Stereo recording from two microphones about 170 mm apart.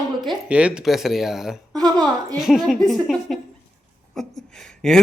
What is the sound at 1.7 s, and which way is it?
Speech, 25° right (ahead or behind).